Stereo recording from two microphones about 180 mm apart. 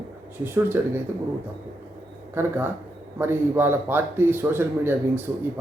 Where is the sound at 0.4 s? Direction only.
10° right (ahead or behind).